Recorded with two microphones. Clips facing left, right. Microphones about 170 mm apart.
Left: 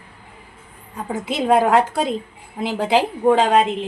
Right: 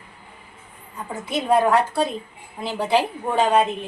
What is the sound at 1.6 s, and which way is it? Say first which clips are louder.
A woman's voice: left 2 dB; 90° left.